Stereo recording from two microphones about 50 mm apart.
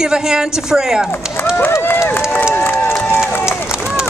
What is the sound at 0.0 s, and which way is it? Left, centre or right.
A woman's voice, centre.